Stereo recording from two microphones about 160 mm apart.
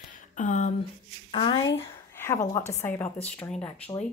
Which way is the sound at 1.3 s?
35° left (ahead or behind).